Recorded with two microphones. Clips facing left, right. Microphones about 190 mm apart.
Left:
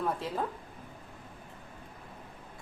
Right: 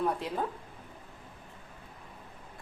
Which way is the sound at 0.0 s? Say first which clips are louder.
Right 1 dB; centre (ahead or behind).